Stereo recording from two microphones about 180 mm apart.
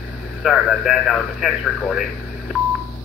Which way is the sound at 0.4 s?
5° right (ahead or behind).